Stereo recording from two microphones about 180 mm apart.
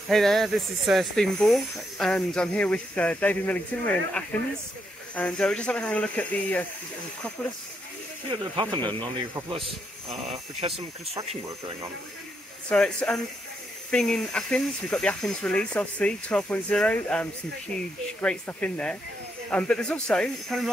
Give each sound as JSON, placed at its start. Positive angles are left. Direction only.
{"t": 0.1, "sound": "speech", "side_deg": 0}
{"t": 8.3, "sound": "speech", "side_deg": -25}
{"t": 12.6, "sound": "speech", "side_deg": 5}